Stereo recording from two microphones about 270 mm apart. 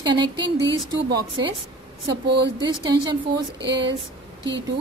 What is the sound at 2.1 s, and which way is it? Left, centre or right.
Speech, right.